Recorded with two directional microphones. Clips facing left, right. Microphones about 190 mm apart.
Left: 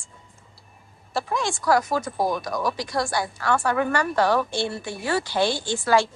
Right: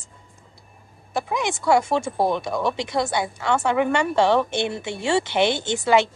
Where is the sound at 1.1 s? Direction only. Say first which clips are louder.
Right 1 dB; 15° right (ahead or behind).